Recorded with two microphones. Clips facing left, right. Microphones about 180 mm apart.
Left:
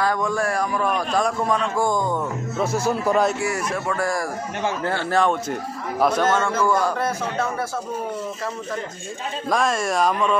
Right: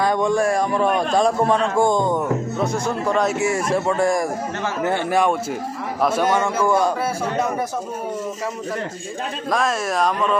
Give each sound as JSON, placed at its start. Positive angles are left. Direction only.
{"t": 0.0, "sound": "a man's voice", "side_deg": -25}
{"t": 2.6, "sound": "speech", "side_deg": 5}
{"t": 3.3, "sound": "a man's voice", "side_deg": -25}
{"t": 9.5, "sound": "speech", "side_deg": 0}